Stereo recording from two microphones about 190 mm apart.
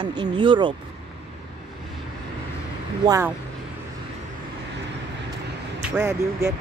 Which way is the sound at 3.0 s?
20° right (ahead or behind).